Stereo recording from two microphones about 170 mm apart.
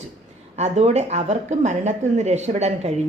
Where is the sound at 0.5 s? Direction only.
40° right (ahead or behind).